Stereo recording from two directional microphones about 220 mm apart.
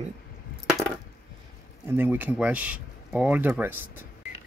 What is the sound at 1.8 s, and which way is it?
Speech, 10° right (ahead or behind).